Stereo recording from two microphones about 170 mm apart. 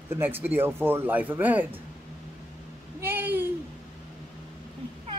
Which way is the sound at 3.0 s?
10° right (ahead or behind).